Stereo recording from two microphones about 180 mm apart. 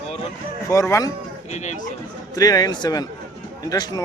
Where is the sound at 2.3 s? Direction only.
20° left (ahead or behind).